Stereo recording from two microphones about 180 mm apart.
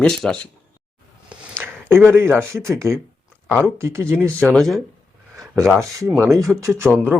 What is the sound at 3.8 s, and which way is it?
Speech, 15° right (ahead or behind).